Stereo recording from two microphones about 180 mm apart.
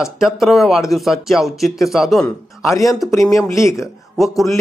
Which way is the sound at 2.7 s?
20° left (ahead or behind).